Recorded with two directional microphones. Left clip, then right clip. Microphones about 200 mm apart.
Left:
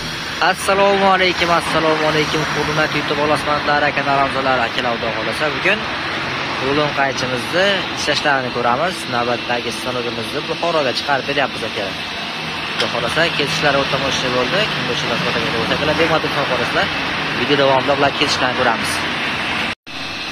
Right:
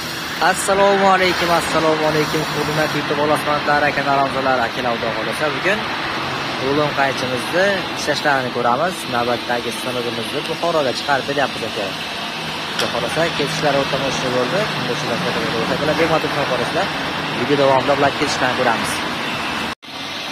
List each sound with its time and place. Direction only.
0.4 s speech: centre (ahead or behind)
3.3 s speech: centre (ahead or behind)
7.5 s speech: 5° right (ahead or behind)
10.7 s speech: centre (ahead or behind)
13.2 s speech: 5° left (ahead or behind)
17.6 s speech: centre (ahead or behind)